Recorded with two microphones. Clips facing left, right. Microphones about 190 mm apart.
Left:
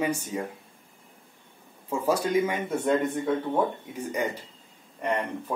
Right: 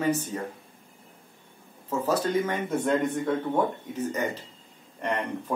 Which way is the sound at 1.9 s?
10° left (ahead or behind).